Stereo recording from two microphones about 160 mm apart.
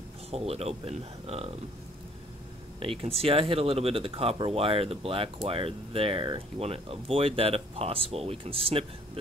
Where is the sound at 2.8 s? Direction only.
35° right (ahead or behind).